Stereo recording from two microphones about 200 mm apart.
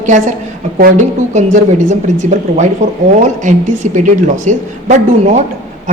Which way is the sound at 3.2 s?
40° right (ahead or behind).